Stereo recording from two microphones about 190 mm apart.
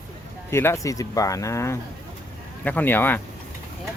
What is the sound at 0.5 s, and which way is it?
Speech, 15° left (ahead or behind).